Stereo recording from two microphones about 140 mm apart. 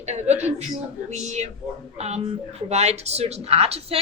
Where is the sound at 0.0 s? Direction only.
55° right (ahead or behind).